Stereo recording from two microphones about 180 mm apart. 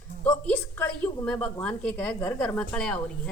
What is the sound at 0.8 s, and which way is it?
A woman's voice, 10° left (ahead or behind).